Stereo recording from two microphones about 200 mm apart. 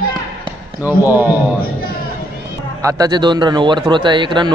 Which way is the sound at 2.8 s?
15° right (ahead or behind).